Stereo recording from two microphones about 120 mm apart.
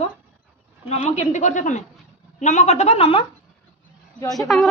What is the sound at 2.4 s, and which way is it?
Speech, 75° left (ahead or behind).